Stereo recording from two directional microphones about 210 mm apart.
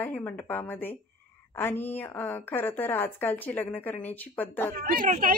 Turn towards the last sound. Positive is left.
turn(degrees=-40)  # may be behind; listen again after turning